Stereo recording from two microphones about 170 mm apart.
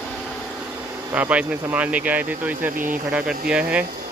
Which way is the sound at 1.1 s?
10° right (ahead or behind).